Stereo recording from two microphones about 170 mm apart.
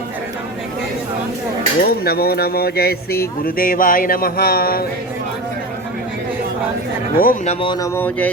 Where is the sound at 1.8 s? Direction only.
65° left (ahead or behind).